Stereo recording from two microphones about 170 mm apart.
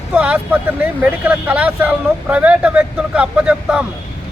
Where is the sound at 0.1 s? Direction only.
10° right (ahead or behind).